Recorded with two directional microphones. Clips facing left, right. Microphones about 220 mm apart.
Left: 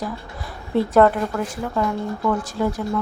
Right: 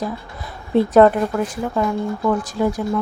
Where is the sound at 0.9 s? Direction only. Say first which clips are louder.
Right 3 dB; 20° right (ahead or behind).